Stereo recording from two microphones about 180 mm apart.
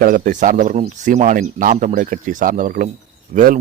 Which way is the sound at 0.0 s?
45° right (ahead or behind).